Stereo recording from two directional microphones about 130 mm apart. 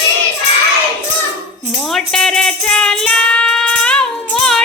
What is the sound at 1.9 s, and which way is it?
Music, 5° left (ahead or behind).